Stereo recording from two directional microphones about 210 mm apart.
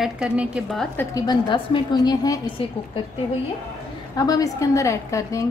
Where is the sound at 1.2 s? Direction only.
20° left (ahead or behind).